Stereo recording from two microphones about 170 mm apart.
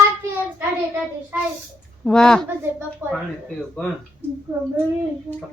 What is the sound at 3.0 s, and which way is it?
Child singing, 15° right (ahead or behind).